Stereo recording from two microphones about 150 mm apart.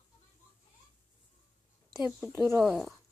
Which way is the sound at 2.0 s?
Centre (ahead or behind).